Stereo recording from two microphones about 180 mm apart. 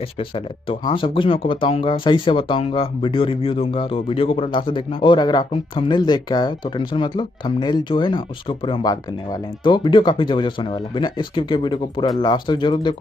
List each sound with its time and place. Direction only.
0.2 s speech: 30° left (ahead or behind)